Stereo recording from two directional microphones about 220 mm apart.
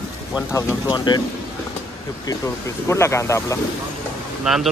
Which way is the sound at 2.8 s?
10° left (ahead or behind).